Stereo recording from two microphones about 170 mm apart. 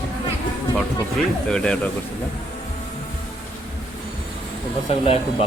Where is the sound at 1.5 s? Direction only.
5° left (ahead or behind).